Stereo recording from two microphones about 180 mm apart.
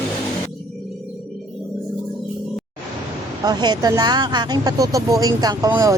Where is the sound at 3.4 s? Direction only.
25° right (ahead or behind).